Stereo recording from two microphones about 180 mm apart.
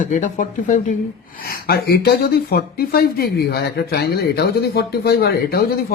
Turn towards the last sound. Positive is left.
turn(degrees=55)  # may be behind; listen again after turning